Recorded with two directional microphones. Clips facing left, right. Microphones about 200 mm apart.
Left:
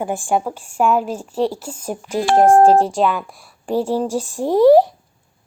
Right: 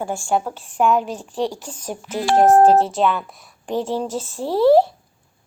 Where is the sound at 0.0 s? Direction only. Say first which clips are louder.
Left 2 dB; 15° left (ahead or behind).